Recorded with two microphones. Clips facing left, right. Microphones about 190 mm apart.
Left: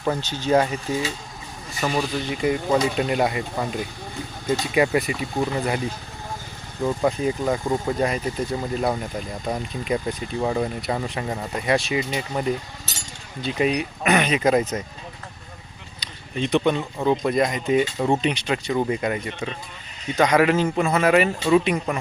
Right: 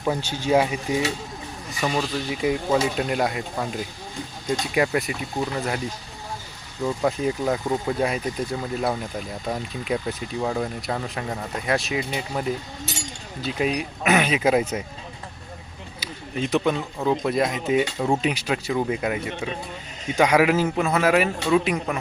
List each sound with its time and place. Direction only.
0.0 s speech: 10° right (ahead or behind)
1.8 s speech: centre (ahead or behind)
6.8 s speech: centre (ahead or behind)
16.0 s speech: 5° right (ahead or behind)